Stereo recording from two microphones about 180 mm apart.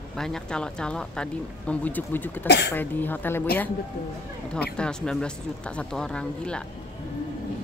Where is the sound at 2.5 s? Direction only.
65° left (ahead or behind).